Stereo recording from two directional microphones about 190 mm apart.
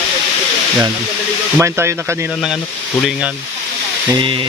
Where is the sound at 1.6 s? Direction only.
15° right (ahead or behind).